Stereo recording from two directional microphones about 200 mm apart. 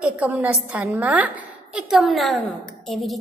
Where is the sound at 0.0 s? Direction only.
5° right (ahead or behind).